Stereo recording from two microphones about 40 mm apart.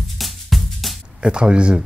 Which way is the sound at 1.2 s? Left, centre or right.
Right.